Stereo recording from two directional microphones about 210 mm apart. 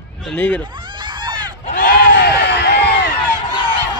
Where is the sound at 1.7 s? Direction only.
45° left (ahead or behind).